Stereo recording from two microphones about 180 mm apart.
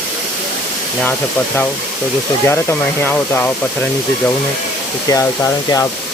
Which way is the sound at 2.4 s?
10° left (ahead or behind).